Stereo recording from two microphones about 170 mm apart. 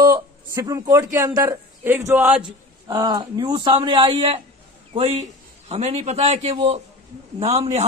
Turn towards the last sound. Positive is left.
turn(degrees=-40)  # may be behind; listen again after turning